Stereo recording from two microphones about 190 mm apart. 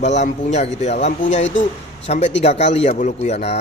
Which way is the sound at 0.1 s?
35° left (ahead or behind).